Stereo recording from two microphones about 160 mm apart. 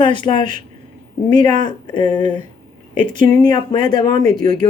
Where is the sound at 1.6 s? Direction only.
30° left (ahead or behind).